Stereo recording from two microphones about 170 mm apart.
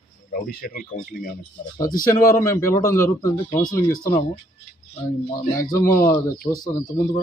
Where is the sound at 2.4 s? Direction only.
15° left (ahead or behind).